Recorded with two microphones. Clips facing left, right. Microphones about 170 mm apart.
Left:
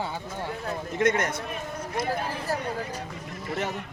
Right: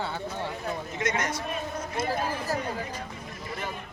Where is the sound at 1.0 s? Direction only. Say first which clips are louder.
Left 7 dB; 55° left (ahead or behind).